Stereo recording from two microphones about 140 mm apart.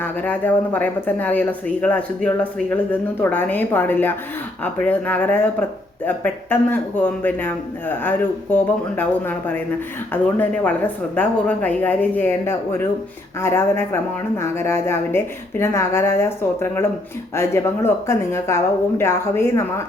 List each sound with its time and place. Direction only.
0.0 s speech: 15° left (ahead or behind)